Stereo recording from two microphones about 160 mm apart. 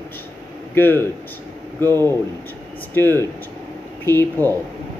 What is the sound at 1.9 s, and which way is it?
Speech, 25° right (ahead or behind).